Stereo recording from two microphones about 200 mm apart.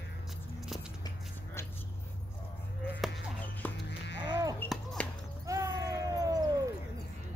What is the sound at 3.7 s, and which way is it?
Sheep, 60° left (ahead or behind).